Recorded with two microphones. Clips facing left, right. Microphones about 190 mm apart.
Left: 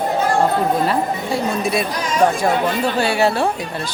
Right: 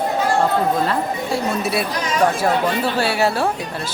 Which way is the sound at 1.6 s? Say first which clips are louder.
Left 1 dB; 5° right (ahead or behind).